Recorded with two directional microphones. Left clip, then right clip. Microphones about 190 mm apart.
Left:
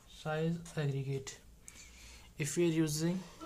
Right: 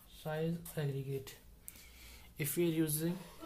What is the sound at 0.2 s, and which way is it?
Speech, 25° left (ahead or behind).